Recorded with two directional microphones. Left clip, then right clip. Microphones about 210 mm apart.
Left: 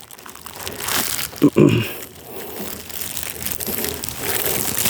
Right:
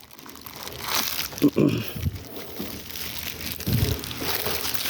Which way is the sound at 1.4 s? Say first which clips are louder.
Left 7 dB; 35° left (ahead or behind).